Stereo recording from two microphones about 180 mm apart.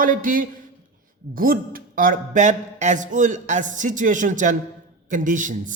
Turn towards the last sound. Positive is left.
turn(degrees=-45)  # may be behind; listen again after turning